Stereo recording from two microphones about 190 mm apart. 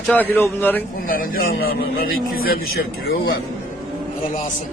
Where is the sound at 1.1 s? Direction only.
50° left (ahead or behind).